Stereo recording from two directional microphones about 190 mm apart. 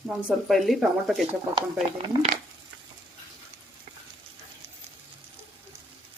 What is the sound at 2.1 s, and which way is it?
Speech, 30° right (ahead or behind).